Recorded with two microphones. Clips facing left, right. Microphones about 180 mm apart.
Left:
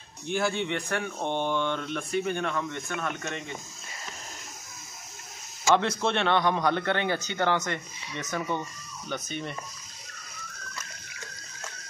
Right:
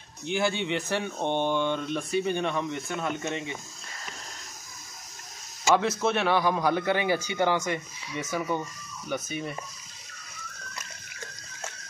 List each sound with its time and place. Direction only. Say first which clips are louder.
0.6 s speech: right 1 dB; 15° right (ahead or behind)
3.3 s a man's voice: right 3 dB; 5° right (ahead or behind)
5.7 s a man's voice: even; 5° right (ahead or behind)